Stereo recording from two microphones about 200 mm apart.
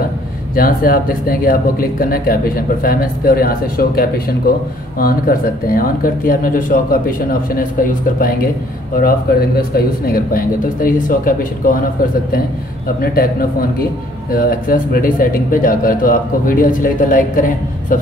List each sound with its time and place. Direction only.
0.6 s speech: 45° left (ahead or behind)
9.6 s speech: 45° left (ahead or behind)
13.0 s speech: 45° left (ahead or behind)